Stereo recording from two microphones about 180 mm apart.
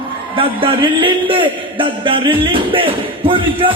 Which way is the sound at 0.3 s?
30° right (ahead or behind).